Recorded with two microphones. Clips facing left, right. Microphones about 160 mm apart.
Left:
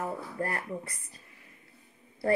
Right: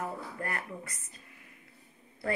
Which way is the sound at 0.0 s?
30° left (ahead or behind).